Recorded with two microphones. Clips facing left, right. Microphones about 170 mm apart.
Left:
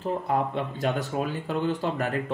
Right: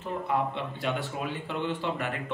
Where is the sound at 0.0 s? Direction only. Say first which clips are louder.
Left 3 dB; 40° left (ahead or behind).